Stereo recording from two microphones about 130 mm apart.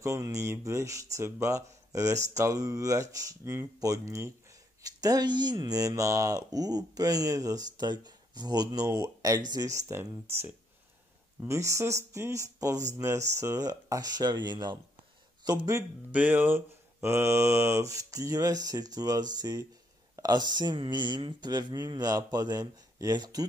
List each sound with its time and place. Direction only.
0.0 s speech: 20° right (ahead or behind)
16.1 s speech: 10° right (ahead or behind); by 23.4 s 30° right (ahead or behind)